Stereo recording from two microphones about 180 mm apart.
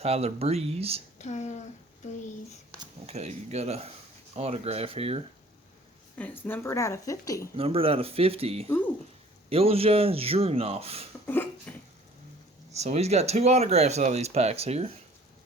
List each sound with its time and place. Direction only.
0.0 s speech: 35° right (ahead or behind)
1.2 s speech: 40° left (ahead or behind)
3.1 s speech: 35° right (ahead or behind)
6.4 s speech: 15° left (ahead or behind)
7.5 s speech: 30° right (ahead or behind)
11.7 s a sound: 10° left (ahead or behind)
12.7 s speech: 35° right (ahead or behind)